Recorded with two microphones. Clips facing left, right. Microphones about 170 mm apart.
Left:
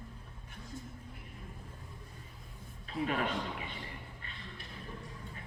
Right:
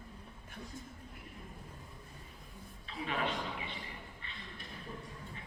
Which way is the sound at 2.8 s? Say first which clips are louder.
Left 4 dB; 45° left (ahead or behind).